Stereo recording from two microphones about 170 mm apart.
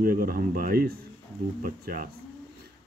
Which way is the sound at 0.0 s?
60° right (ahead or behind).